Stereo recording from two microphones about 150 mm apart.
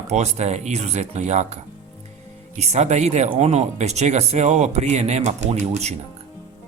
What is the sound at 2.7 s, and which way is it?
Speech, 45° right (ahead or behind).